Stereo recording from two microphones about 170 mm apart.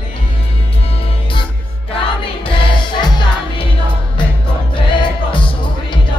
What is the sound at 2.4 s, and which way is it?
Music, 25° left (ahead or behind).